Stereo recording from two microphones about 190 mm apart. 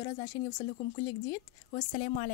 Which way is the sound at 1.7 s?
30° left (ahead or behind).